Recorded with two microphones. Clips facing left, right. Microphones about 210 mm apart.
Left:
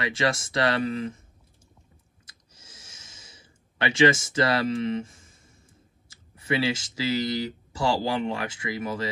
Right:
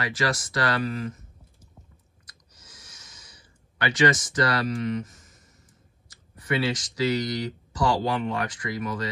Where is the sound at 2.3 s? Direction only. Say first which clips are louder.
Right 1 dB; 25° left (ahead or behind).